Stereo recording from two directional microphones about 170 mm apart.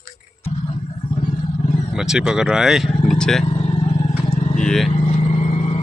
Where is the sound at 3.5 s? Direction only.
35° left (ahead or behind).